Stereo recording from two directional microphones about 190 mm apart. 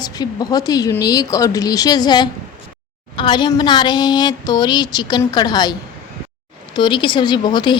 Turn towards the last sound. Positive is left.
turn(degrees=25)  # may be behind; listen again after turning